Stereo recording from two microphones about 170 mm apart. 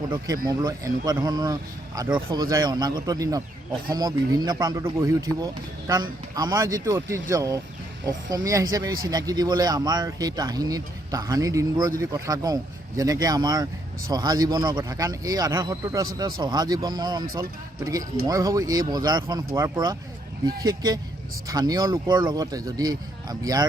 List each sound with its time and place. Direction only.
0.4 s speech: 20° right (ahead or behind)